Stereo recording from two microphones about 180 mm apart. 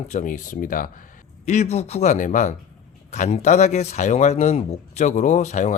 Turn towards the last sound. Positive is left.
turn(degrees=40)  # may be behind; listen again after turning